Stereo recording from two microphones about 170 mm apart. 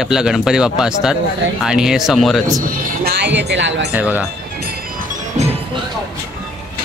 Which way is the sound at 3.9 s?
10° right (ahead or behind).